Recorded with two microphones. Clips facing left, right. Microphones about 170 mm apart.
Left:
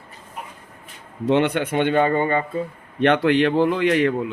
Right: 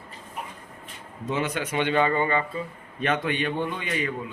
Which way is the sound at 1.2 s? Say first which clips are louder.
Left 9 dB; 65° left (ahead or behind).